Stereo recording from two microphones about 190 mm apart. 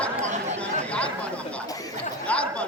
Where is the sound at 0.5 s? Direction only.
5° left (ahead or behind).